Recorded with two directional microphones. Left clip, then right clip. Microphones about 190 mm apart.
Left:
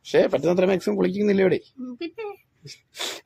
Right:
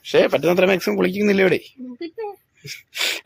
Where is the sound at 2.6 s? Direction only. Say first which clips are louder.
Right 9 dB; centre (ahead or behind).